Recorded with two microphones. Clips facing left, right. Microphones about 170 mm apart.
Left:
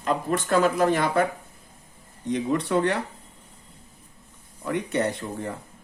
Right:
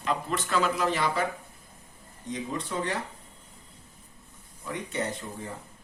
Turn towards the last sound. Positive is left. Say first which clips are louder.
# left 6 dB
turn(degrees=65)  # may be behind; listen again after turning